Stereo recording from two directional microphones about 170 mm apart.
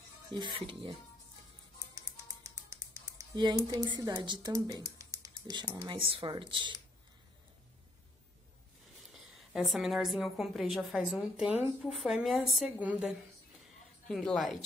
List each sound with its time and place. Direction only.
0.3 s speech: 25° right (ahead or behind)
3.2 s speech: 25° right (ahead or behind)
9.1 s a woman's voice: centre (ahead or behind)
14.0 s a woman's voice: 5° left (ahead or behind)